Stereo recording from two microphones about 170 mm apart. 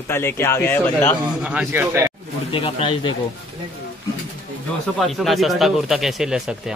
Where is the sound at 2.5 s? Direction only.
30° left (ahead or behind).